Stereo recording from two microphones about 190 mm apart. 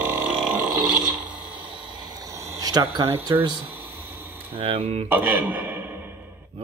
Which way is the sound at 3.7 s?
10° right (ahead or behind).